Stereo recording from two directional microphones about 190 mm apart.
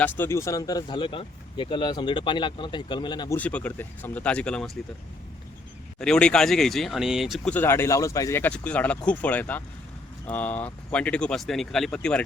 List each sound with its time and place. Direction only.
0.0 s speech: 15° left (ahead or behind)
3.3 s speech: 5° left (ahead or behind)
6.0 s speech: 5° left (ahead or behind)